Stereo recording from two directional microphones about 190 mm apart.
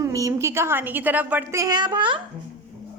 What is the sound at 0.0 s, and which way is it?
A woman's voice, 15° right (ahead or behind).